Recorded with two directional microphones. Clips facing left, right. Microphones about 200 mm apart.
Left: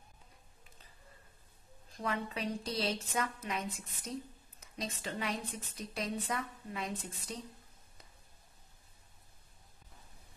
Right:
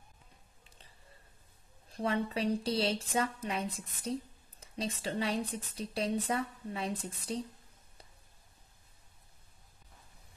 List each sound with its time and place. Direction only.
1.9 s speech: 30° right (ahead or behind)